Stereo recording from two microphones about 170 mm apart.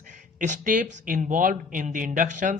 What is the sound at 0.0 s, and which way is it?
Speech, 50° right (ahead or behind).